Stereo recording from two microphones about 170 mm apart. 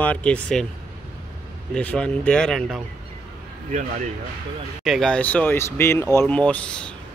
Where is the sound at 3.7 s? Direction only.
45° right (ahead or behind).